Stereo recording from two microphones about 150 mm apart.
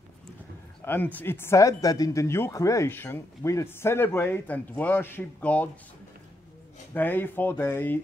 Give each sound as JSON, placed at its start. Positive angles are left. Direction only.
{"t": 0.8, "sound": "speech", "side_deg": 10}
{"t": 6.9, "sound": "speech", "side_deg": 15}